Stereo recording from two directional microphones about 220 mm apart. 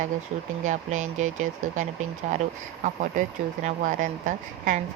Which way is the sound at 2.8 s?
35° right (ahead or behind).